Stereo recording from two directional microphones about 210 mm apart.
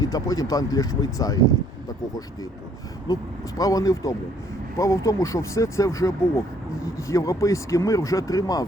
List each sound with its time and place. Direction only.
0.0 s speech: 15° left (ahead or behind)
3.1 s speech: 15° left (ahead or behind)